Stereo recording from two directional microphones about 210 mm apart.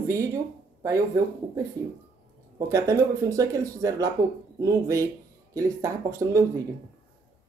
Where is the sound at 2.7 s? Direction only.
15° right (ahead or behind).